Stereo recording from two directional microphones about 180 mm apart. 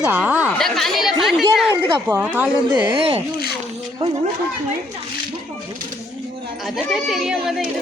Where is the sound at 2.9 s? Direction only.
30° right (ahead or behind).